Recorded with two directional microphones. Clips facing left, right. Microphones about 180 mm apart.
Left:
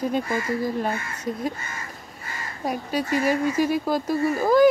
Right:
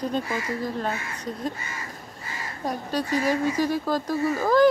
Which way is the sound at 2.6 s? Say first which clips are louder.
Left 2 dB; 10° left (ahead or behind).